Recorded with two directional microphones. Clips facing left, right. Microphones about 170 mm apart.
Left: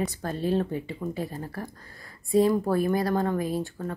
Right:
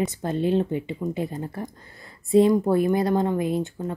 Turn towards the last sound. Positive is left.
turn(degrees=-20)  # may be behind; listen again after turning